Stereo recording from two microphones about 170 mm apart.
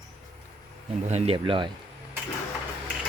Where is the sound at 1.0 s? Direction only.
40° right (ahead or behind).